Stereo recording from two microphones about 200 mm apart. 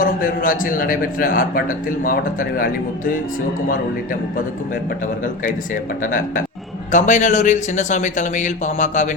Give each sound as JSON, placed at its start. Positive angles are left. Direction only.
{"t": 0.0, "sound": "a man's voice", "side_deg": 45}
{"t": 6.0, "sound": "a man's voice", "side_deg": 45}